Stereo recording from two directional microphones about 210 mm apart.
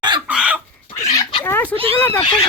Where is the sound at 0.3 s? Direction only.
5° right (ahead or behind).